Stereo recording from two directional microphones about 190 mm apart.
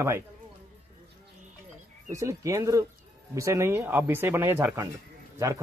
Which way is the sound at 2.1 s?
15° right (ahead or behind).